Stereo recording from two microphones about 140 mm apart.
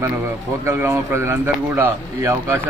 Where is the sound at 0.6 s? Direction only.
20° right (ahead or behind).